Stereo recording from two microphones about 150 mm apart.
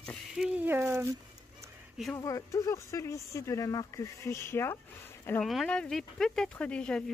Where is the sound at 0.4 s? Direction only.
15° right (ahead or behind).